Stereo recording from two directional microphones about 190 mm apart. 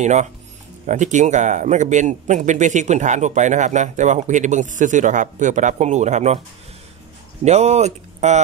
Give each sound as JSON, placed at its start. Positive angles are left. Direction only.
{"t": 0.0, "sound": "speech", "side_deg": -40}
{"t": 7.4, "sound": "speech", "side_deg": -35}